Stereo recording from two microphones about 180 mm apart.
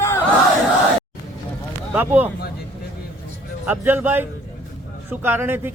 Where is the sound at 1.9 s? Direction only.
10° right (ahead or behind).